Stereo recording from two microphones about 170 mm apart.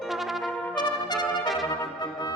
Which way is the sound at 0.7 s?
25° left (ahead or behind).